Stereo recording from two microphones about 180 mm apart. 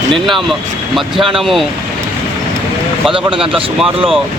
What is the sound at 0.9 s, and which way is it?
Speech, centre (ahead or behind).